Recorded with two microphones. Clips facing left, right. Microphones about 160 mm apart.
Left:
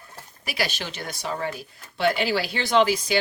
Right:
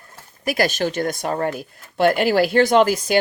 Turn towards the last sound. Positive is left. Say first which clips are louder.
# right 4 dB
turn(degrees=-50)  # may be behind; listen again after turning